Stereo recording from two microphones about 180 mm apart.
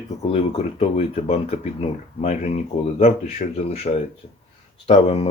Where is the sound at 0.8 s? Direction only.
35° left (ahead or behind).